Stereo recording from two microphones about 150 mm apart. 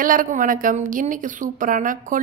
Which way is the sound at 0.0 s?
65° right (ahead or behind).